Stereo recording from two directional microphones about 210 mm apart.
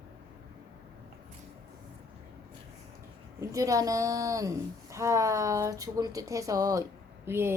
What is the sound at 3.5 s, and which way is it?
A woman's voice, 15° right (ahead or behind).